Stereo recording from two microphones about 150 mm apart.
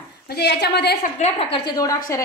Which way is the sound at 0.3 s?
90° left.